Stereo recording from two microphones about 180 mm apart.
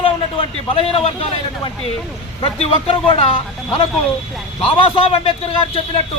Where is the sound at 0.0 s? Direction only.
30° left (ahead or behind).